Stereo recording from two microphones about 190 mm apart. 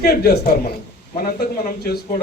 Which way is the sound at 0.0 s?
55° left (ahead or behind).